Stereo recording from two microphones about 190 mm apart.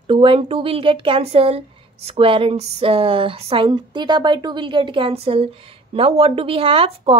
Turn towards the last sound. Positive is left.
turn(degrees=-30)  # may be behind; listen again after turning